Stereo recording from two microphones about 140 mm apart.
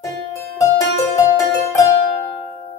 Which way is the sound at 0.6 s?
20° left (ahead or behind).